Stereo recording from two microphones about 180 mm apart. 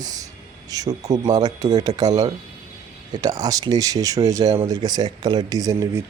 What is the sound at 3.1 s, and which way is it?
Speech, 20° right (ahead or behind).